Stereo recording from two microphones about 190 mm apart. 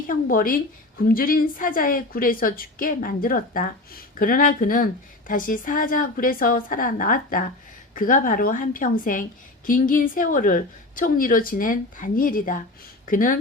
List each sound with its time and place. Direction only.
0.1 s a woman's voice: 45° left (ahead or behind)